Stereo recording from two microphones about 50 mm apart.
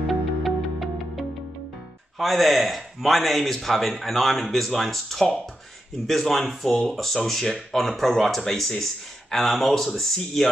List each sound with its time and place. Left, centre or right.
0.0 s music: centre
2.1 s speech: centre